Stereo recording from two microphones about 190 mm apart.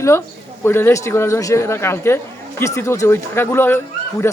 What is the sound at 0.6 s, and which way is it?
Speech, 15° left (ahead or behind).